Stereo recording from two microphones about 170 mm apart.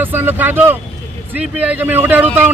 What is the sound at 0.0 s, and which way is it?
Speech, 10° right (ahead or behind).